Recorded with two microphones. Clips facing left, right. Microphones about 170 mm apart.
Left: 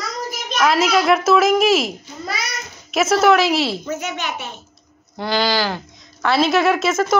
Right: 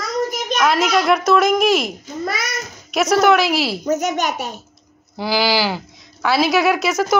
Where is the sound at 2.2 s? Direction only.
50° right (ahead or behind).